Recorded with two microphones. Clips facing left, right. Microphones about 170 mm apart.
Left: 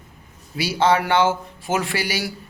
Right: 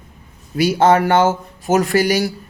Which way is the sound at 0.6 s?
50° right (ahead or behind).